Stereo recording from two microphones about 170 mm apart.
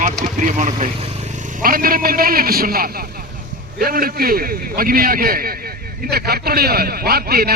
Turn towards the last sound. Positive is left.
turn(degrees=-65)  # may be behind; listen again after turning